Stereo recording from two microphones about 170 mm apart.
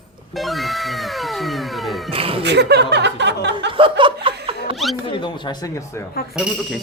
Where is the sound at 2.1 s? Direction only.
35° right (ahead or behind).